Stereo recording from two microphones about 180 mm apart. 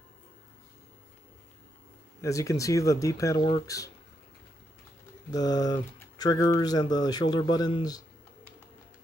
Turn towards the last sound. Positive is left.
turn(degrees=20)  # may be behind; listen again after turning